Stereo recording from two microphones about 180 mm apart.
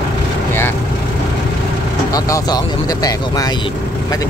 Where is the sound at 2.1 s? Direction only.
20° left (ahead or behind).